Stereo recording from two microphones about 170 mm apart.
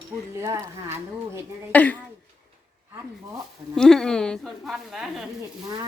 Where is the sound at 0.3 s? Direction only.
15° right (ahead or behind).